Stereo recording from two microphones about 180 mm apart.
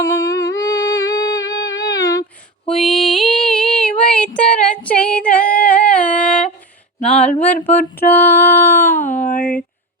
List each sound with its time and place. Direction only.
0.0 s humming: 20° left (ahead or behind)
2.6 s female singing: 5° left (ahead or behind)
4.4 s a sound: 5° left (ahead or behind)
4.8 s female singing: 5° left (ahead or behind)
7.0 s a sound: 5° left (ahead or behind)
9.1 s speech: 45° left (ahead or behind)